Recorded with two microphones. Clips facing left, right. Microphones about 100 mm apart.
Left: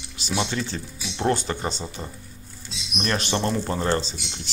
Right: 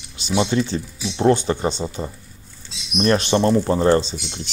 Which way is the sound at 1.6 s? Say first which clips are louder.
Right 7 dB; 40° right (ahead or behind).